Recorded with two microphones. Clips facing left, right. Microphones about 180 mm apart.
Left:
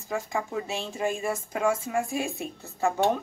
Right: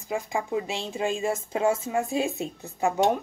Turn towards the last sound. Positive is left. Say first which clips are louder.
# right 1 dB
turn(degrees=-15)  # may be behind; listen again after turning